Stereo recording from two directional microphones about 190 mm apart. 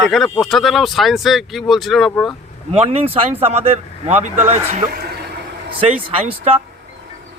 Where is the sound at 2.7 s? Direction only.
30° right (ahead or behind).